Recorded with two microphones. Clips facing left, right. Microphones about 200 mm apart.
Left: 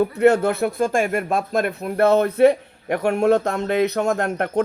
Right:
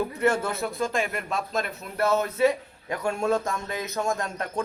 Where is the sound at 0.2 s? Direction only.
65° left (ahead or behind).